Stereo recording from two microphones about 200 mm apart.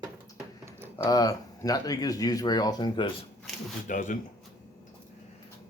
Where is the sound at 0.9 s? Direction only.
20° left (ahead or behind).